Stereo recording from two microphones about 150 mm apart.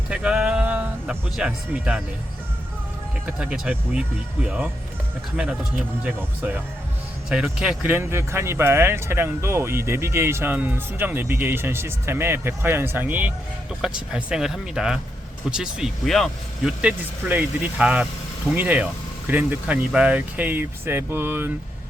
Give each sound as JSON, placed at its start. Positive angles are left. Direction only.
{"t": 0.1, "sound": "speech", "side_deg": -5}
{"t": 3.2, "sound": "speech", "side_deg": -5}
{"t": 6.0, "sound": "speech", "side_deg": -10}
{"t": 16.8, "sound": "speech", "side_deg": -10}